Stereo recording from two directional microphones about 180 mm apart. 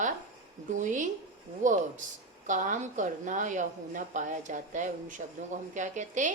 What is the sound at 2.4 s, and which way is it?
A woman's voice, 45° right (ahead or behind).